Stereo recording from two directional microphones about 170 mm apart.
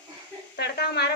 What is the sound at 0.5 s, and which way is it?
Speech, 75° left (ahead or behind).